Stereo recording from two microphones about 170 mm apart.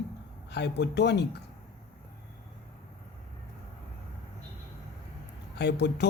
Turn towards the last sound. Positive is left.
turn(degrees=80)